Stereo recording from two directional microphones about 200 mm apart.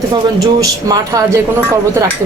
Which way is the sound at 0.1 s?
20° right (ahead or behind).